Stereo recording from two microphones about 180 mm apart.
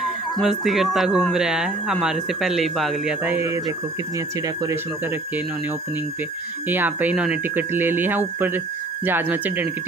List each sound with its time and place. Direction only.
0.0 s speech: centre (ahead or behind); by 4.7 s 20° right (ahead or behind)
6.7 s speech: 10° right (ahead or behind)